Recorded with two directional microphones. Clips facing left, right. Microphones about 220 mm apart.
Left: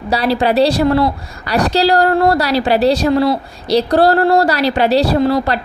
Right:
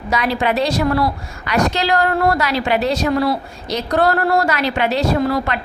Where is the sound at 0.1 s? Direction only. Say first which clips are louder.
Left 4 dB; 35° left (ahead or behind).